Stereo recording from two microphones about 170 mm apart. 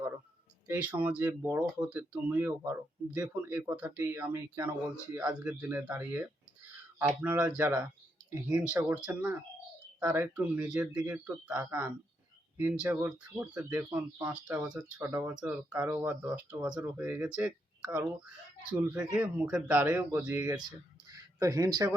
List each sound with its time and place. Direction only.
0.7 s speech: 10° right (ahead or behind)
19.1 s speech: 5° right (ahead or behind)
20.6 s speech: 25° right (ahead or behind)